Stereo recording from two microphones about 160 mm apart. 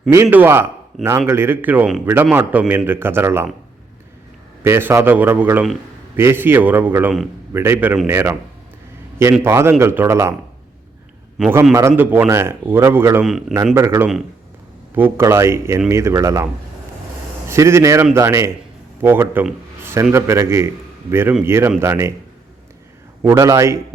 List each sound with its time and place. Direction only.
0.1 s a man's voice: 15° right (ahead or behind)
0.9 s speech: centre (ahead or behind)
1.3 s a man's voice: 15° right (ahead or behind)
4.6 s a man's voice: 15° right (ahead or behind)
9.4 s a man's voice: 15° right (ahead or behind)
11.3 s a man's voice: 5° right (ahead or behind)
17.5 s a man's voice: 15° right (ahead or behind)
23.2 s speech: 20° right (ahead or behind)